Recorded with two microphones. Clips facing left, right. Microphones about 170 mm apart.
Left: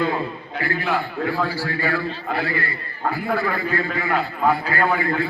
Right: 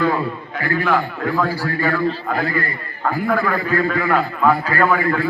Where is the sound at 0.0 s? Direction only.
45° right (ahead or behind).